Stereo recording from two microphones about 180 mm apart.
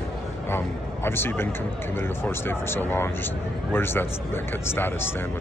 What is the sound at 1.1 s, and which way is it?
Speech, 10° left (ahead or behind).